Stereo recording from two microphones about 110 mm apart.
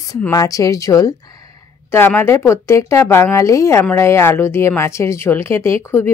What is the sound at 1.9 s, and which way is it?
Speech, 20° left (ahead or behind).